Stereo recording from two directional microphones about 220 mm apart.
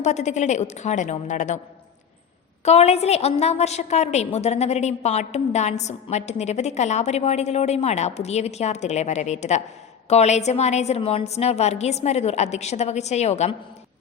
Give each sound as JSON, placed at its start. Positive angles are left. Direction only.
{"t": 0.0, "sound": "a woman's voice", "side_deg": 30}
{"t": 2.6, "sound": "a woman's voice", "side_deg": 30}